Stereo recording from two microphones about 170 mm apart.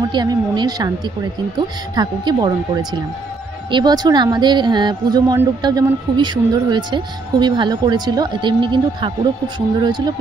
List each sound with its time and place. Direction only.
0.1 s speech: 25° right (ahead or behind)
2.0 s speech: 25° right (ahead or behind)